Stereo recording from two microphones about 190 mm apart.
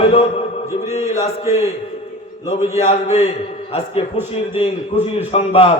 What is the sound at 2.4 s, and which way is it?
Speech, 15° right (ahead or behind).